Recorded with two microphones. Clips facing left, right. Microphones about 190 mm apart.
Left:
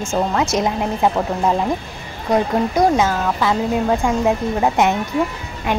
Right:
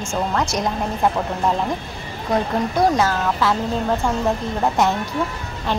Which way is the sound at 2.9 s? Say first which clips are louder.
Left 2 dB; 10° left (ahead or behind).